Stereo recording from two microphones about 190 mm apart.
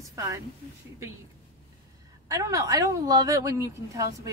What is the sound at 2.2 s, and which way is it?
A woman's voice, 15° right (ahead or behind).